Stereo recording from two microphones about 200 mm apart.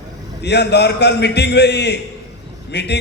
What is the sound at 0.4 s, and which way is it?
A man's voice, 55° left (ahead or behind).